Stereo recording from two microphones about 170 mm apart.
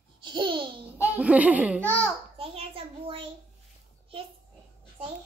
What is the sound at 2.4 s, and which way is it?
Speech, 35° right (ahead or behind).